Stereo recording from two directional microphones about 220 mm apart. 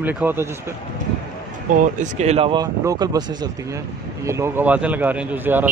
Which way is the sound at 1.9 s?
30° right (ahead or behind).